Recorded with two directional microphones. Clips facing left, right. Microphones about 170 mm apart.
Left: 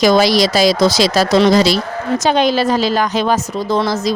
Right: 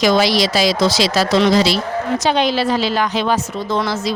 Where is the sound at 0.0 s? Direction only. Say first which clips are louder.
Left 3 dB; 40° left (ahead or behind).